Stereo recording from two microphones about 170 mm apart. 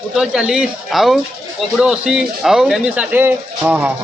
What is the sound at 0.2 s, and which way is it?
A man's voice, 5° right (ahead or behind).